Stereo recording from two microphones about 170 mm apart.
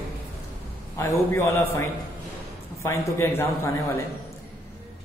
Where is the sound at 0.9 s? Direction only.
15° left (ahead or behind).